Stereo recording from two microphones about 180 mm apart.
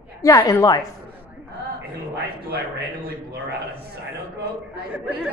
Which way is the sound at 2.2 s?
60° right (ahead or behind).